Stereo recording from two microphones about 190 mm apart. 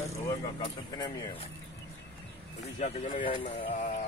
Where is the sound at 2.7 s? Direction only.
40° left (ahead or behind).